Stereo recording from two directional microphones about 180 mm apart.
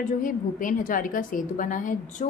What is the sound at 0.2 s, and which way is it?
A woman's voice, 50° left (ahead or behind).